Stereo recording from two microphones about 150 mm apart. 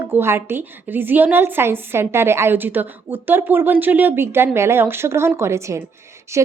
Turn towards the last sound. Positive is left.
turn(degrees=-20)  # may be behind; listen again after turning